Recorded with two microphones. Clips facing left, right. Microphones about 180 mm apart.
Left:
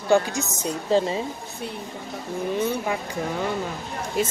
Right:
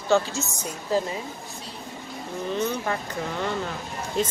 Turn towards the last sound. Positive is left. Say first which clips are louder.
# left 1 dB
turn(degrees=5)  # may be behind; listen again after turning